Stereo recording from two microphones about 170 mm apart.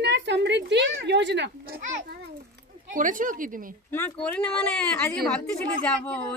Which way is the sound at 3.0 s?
50° right (ahead or behind).